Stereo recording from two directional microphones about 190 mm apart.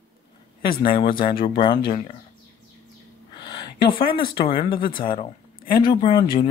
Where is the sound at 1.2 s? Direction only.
25° left (ahead or behind).